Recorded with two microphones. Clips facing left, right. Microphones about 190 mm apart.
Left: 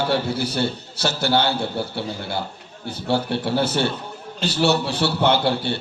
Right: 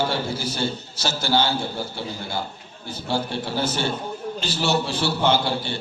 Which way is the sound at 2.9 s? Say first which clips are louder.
Left 4 dB; 60° left (ahead or behind).